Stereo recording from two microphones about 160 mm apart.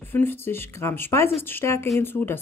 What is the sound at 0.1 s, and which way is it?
Speech, 15° left (ahead or behind).